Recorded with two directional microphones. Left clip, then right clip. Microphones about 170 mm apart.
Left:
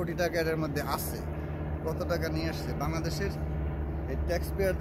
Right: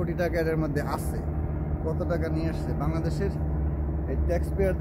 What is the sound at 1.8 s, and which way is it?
Speech, centre (ahead or behind).